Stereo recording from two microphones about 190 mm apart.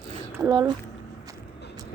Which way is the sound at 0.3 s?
15° right (ahead or behind).